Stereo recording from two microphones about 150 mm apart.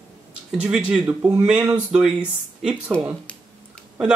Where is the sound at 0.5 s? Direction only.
5° right (ahead or behind).